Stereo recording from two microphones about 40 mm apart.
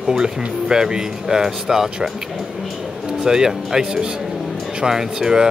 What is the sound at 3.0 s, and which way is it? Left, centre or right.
Speech, centre.